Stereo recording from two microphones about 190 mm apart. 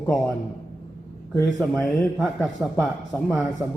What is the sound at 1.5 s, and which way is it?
A man's voice, 5° left (ahead or behind).